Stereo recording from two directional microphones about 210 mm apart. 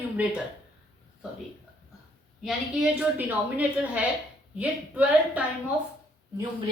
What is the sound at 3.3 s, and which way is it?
Speech, 5° right (ahead or behind).